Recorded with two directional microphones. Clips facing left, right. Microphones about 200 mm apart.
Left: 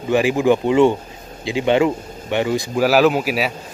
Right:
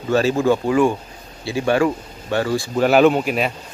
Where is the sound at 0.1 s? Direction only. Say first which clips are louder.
Left 1 dB; 15° left (ahead or behind).